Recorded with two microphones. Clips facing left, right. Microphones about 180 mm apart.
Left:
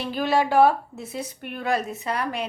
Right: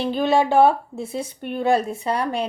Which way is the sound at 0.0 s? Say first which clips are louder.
Right 4 dB; 25° right (ahead or behind).